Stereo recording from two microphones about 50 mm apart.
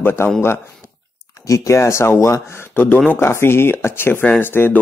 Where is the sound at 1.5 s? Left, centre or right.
Left.